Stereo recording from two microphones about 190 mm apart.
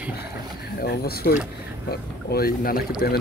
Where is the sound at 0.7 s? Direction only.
55° left (ahead or behind).